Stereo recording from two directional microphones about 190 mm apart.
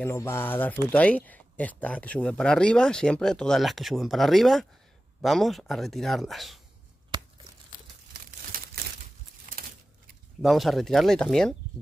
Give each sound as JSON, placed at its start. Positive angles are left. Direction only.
{"t": 0.0, "sound": "speech", "side_deg": 15}
{"t": 7.1, "sound": "tearing", "side_deg": -25}
{"t": 8.1, "sound": "crumpling", "side_deg": -50}
{"t": 9.5, "sound": "keys jangling", "side_deg": -45}
{"t": 10.4, "sound": "speech", "side_deg": 0}